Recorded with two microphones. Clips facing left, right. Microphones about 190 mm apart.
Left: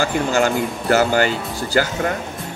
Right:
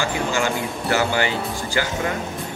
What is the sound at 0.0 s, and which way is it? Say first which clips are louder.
Speech: left 4 dB; 45° left (ahead or behind).